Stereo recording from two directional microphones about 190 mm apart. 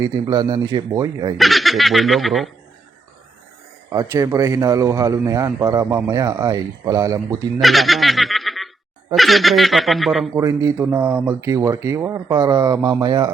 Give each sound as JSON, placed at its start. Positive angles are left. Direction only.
{"t": 0.0, "sound": "speech", "side_deg": -20}
{"t": 1.4, "sound": "speech", "side_deg": 0}
{"t": 3.9, "sound": "a man's voice", "side_deg": -15}
{"t": 7.6, "sound": "snicker", "side_deg": 0}
{"t": 9.1, "sound": "speech", "side_deg": 0}
{"t": 10.3, "sound": "a man's voice", "side_deg": -15}